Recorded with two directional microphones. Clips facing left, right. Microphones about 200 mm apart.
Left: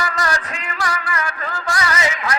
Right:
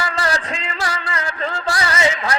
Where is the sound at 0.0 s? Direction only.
30° right (ahead or behind).